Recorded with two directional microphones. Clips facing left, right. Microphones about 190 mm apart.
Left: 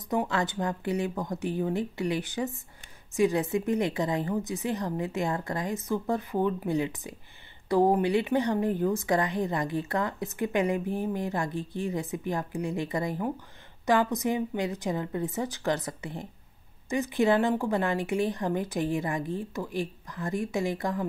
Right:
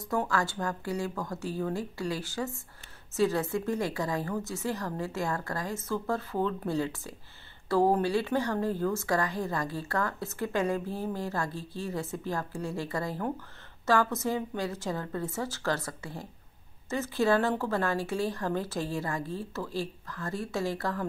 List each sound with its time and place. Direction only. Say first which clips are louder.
0.0 s a woman's voice: left 2 dB; 20° left (ahead or behind)